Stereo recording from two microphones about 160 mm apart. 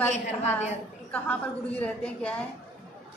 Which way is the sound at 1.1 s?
10° left (ahead or behind).